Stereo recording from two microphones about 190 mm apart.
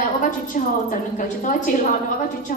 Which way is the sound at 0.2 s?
45° left (ahead or behind).